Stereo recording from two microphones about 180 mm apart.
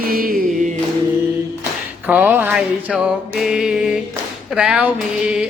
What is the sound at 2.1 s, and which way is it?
Mantra, 10° right (ahead or behind).